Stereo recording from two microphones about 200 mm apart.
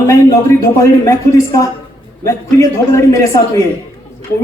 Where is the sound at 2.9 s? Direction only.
15° left (ahead or behind).